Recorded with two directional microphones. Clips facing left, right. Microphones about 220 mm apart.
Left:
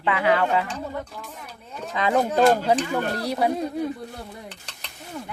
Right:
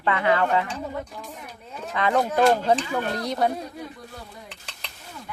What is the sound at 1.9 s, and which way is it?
Speech, 15° left (ahead or behind).